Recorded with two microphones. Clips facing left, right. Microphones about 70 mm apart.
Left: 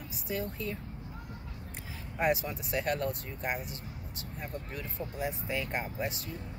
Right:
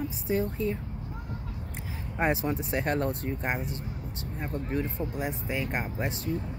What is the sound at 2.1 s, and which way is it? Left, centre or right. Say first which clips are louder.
Speech: right 3 dB; right.